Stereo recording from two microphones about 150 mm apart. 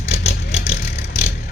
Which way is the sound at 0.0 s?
50° left (ahead or behind).